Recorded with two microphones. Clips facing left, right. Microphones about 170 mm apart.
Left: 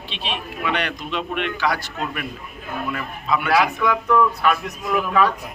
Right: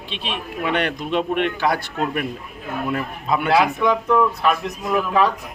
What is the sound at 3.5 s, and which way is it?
A man's voice, 25° right (ahead or behind).